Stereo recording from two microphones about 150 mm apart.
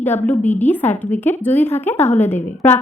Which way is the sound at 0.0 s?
15° left (ahead or behind).